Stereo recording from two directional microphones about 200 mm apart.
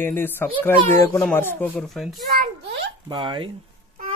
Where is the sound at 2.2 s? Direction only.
50° right (ahead or behind).